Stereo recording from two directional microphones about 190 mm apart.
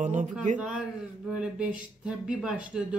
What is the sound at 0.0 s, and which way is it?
Speech, 40° right (ahead or behind).